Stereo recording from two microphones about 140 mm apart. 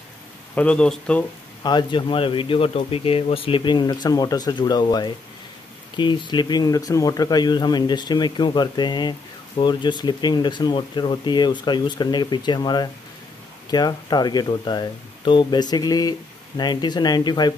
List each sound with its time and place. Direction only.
0.6 s speech: 5° left (ahead or behind)
1.6 s speech: 30° left (ahead or behind)